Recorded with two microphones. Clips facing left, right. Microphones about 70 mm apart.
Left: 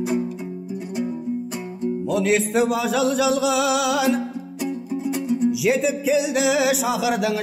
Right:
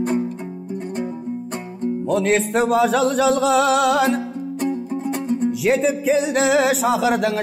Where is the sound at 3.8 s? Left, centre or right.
Right.